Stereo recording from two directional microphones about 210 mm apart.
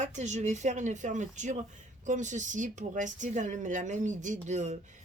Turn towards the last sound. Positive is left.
turn(degrees=-35)  # may be behind; listen again after turning